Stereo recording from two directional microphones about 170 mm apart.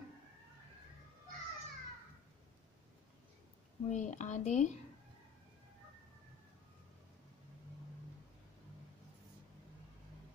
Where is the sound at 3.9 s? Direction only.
45° left (ahead or behind).